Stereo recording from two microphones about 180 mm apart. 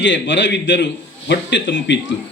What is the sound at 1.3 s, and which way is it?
Speech, 80° left.